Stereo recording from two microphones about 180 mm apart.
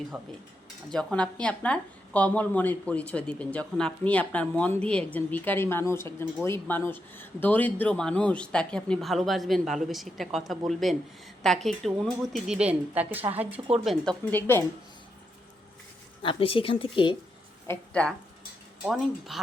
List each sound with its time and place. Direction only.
0.1 s a woman's voice: 5° right (ahead or behind)
14.3 s a woman's voice: 10° left (ahead or behind)
16.2 s a woman's voice: 30° left (ahead or behind)
17.7 s a woman's voice: 5° left (ahead or behind)